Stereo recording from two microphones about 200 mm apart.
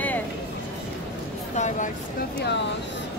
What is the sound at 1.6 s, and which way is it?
Speech, 40° left (ahead or behind).